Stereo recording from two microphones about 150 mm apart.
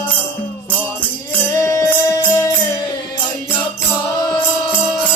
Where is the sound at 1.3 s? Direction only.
20° left (ahead or behind).